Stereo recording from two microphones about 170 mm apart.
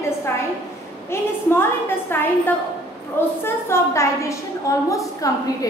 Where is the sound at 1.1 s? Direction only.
15° left (ahead or behind).